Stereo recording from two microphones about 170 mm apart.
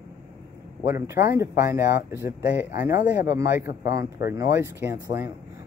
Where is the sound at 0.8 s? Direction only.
15° right (ahead or behind).